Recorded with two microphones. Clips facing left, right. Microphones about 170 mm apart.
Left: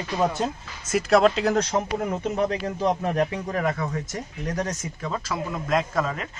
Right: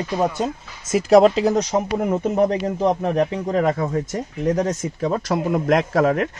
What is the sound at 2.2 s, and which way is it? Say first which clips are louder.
Speech: right 7 dB; 50° right (ahead or behind).